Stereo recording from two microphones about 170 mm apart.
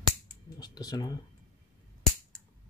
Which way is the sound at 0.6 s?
25° left (ahead or behind).